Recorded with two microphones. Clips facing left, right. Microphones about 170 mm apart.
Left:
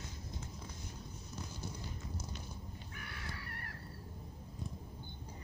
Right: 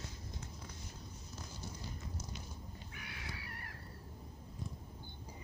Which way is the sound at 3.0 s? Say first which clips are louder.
Left 1 dB; 50° left (ahead or behind).